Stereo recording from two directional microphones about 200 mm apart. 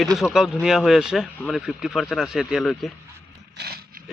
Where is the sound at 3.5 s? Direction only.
55° right (ahead or behind).